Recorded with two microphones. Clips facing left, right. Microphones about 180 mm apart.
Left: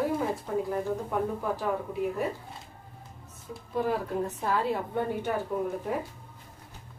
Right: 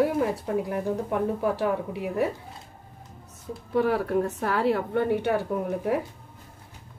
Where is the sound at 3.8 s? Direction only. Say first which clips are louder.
Right 5 dB; 70° right (ahead or behind).